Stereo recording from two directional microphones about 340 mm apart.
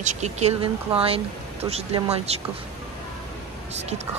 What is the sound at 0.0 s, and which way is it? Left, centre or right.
A woman's voice, centre.